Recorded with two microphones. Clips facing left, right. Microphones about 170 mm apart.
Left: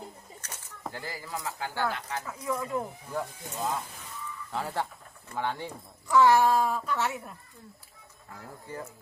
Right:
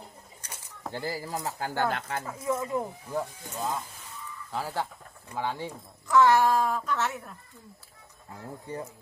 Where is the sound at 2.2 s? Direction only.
30° right (ahead or behind).